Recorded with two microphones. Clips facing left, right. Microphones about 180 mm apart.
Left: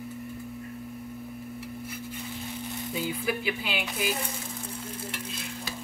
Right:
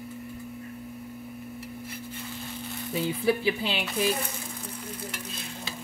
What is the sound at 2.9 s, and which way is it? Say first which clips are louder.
Speech: right 5 dB; 30° right (ahead or behind).